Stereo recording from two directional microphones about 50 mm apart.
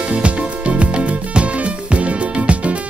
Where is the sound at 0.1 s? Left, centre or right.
Right.